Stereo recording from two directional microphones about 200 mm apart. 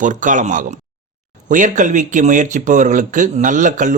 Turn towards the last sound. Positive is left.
turn(degrees=-40)  # may be behind; listen again after turning